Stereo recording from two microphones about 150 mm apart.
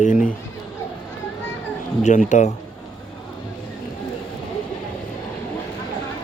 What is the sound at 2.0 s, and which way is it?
Speech, 55° left (ahead or behind).